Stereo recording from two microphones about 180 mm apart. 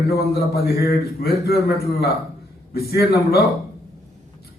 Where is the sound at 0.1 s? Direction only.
60° left (ahead or behind).